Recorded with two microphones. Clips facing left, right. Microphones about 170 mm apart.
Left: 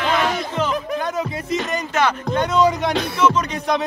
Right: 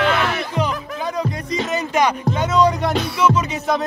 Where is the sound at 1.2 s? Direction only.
5° left (ahead or behind).